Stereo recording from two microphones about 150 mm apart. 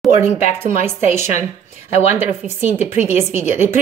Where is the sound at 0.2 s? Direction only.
15° right (ahead or behind).